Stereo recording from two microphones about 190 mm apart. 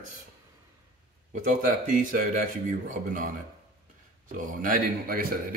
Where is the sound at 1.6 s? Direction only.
45° right (ahead or behind).